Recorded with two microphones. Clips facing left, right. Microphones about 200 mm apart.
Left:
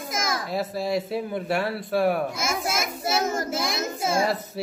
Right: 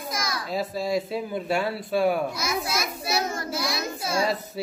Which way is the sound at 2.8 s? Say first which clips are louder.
Left 2 dB; 25° left (ahead or behind).